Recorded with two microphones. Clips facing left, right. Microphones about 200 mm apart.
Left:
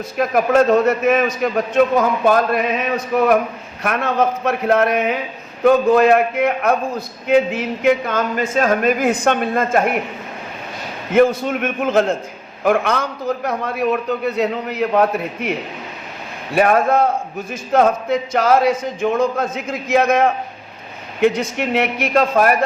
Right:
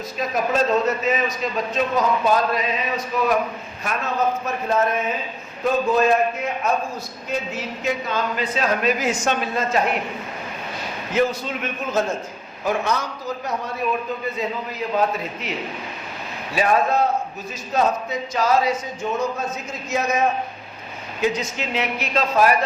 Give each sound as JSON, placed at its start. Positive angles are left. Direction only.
{"t": 0.2, "sound": "a man's voice", "side_deg": 60}
{"t": 3.8, "sound": "a man's voice", "side_deg": 70}
{"t": 11.1, "sound": "a man's voice", "side_deg": 50}
{"t": 16.6, "sound": "a man's voice", "side_deg": 55}
{"t": 19.0, "sound": "a man's voice", "side_deg": 75}
{"t": 19.4, "sound": "a man's voice", "side_deg": 60}